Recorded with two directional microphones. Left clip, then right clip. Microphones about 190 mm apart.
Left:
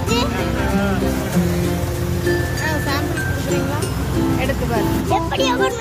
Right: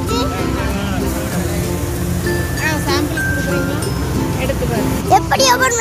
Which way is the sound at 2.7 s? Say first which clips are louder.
Right 5 dB; 30° left (ahead or behind).